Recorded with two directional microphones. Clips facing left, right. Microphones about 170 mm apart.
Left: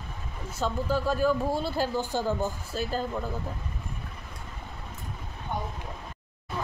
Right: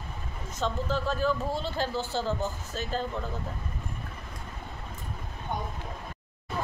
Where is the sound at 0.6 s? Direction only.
10° left (ahead or behind).